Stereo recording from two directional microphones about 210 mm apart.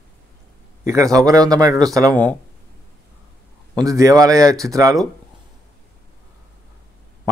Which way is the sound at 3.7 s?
15° right (ahead or behind).